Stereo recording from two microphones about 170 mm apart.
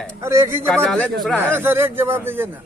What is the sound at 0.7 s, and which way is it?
Speech, 5° left (ahead or behind).